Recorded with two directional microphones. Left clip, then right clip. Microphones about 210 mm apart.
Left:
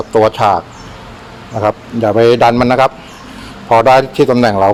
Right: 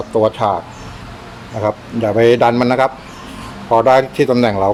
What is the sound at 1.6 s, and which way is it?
A man's voice, 20° left (ahead or behind).